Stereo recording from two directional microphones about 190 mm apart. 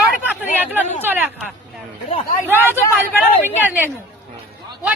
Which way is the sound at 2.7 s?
10° left (ahead or behind).